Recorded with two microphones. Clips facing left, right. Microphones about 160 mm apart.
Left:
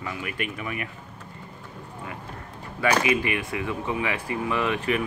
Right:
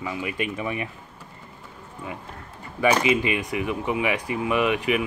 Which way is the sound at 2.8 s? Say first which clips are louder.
Right 2 dB; 20° right (ahead or behind).